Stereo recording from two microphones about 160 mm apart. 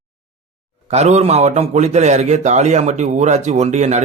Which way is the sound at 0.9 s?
45° right (ahead or behind).